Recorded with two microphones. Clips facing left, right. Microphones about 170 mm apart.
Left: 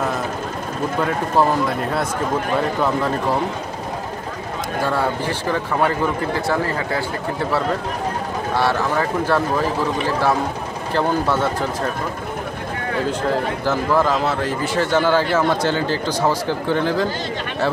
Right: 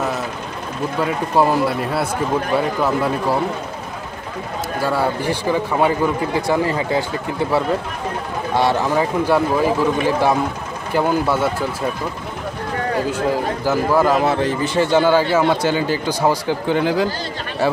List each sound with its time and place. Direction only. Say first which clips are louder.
1.0 s a man's voice: right 2 dB; 10° right (ahead or behind)
4.8 s a man's voice: right 2 dB; 10° right (ahead or behind)
8.5 s a man's voice: right 3 dB; 20° right (ahead or behind)
13.3 s a man's voice: right 1 dB; 10° right (ahead or behind)